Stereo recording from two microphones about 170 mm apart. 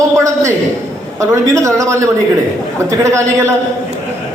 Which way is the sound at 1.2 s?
15° right (ahead or behind).